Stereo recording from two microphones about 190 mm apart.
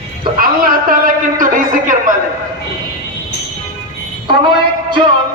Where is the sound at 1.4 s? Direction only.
45° right (ahead or behind).